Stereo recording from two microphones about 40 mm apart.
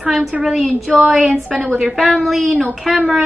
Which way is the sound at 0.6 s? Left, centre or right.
Right.